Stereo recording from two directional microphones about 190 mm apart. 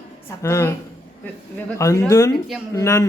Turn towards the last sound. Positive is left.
turn(degrees=15)  # may be behind; listen again after turning